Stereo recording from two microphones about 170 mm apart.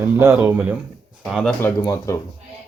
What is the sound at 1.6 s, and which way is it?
Speech, 15° left (ahead or behind).